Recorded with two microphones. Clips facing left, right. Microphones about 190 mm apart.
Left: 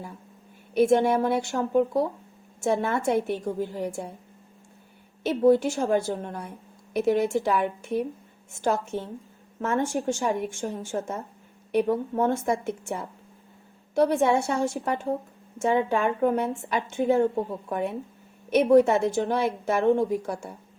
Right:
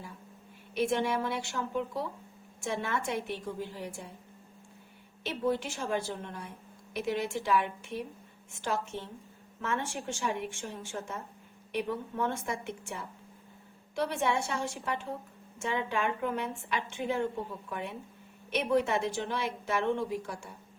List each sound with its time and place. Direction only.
0.8 s a woman's voice: 40° left (ahead or behind)
5.2 s a woman's voice: 40° left (ahead or behind)